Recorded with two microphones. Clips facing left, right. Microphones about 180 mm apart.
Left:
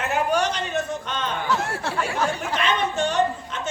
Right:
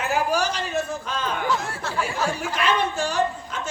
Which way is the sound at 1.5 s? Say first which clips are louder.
Left 1 dB; 65° left (ahead or behind).